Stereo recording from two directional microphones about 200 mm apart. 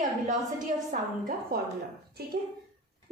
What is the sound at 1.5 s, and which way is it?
Speech, 45° right (ahead or behind).